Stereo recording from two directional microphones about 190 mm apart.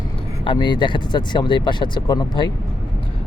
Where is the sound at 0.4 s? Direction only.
25° left (ahead or behind).